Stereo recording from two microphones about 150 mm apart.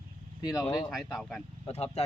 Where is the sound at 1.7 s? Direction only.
45° left (ahead or behind).